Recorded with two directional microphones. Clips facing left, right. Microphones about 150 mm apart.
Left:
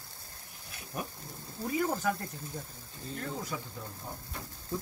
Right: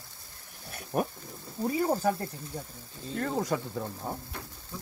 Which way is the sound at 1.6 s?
35° right (ahead or behind).